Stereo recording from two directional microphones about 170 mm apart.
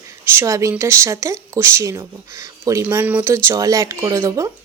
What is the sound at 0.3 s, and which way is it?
A woman's voice, 15° right (ahead or behind).